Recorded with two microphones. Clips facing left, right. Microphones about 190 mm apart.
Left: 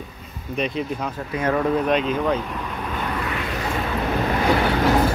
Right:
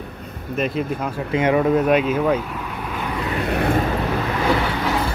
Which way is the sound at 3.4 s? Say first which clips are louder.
Right 7 dB; 60° right (ahead or behind).